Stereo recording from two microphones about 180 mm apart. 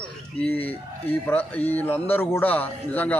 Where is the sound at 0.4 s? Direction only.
10° left (ahead or behind).